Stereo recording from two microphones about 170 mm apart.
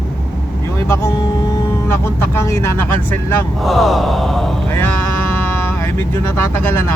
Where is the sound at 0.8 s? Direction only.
20° left (ahead or behind).